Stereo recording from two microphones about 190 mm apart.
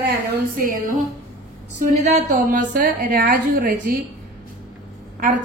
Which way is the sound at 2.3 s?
45° right (ahead or behind).